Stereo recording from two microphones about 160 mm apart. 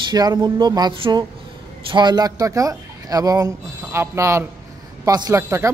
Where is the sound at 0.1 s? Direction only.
25° right (ahead or behind).